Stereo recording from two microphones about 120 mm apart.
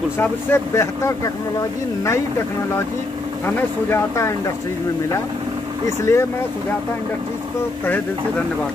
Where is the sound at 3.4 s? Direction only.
20° left (ahead or behind).